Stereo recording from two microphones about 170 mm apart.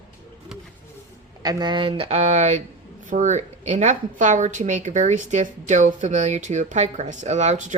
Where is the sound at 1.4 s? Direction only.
25° right (ahead or behind).